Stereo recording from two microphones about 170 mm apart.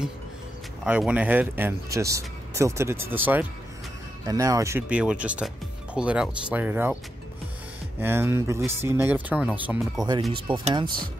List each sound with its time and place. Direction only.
0.8 s speech: 5° right (ahead or behind)
8.0 s speech: 15° right (ahead or behind)
10.3 s speech: 30° right (ahead or behind)